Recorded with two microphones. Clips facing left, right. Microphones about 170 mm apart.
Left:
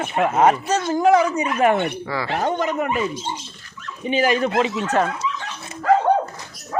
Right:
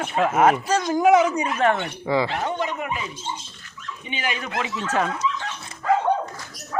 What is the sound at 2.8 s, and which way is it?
Speech, 60° left (ahead or behind).